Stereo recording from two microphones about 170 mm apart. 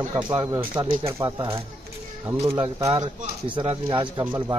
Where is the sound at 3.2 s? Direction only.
35° right (ahead or behind).